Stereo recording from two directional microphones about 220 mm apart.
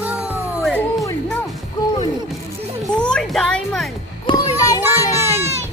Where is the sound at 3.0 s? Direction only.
5° left (ahead or behind).